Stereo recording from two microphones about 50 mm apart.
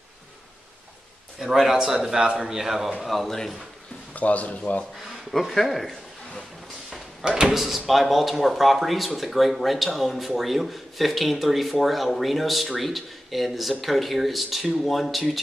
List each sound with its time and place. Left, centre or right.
1.4 s speech: centre
4.1 s speech: left
5.3 s speech: centre
7.2 s speech: centre
7.5 s speech: centre